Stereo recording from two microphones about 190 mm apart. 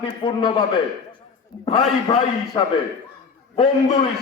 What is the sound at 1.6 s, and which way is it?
Speech, 30° left (ahead or behind).